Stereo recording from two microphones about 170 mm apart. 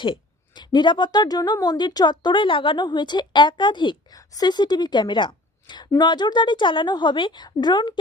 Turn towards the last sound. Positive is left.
turn(degrees=25)  # may be behind; listen again after turning